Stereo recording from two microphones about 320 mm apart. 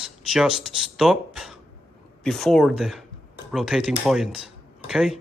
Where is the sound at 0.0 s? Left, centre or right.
Centre.